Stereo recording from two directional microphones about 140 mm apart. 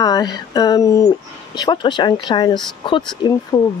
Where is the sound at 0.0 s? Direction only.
25° left (ahead or behind).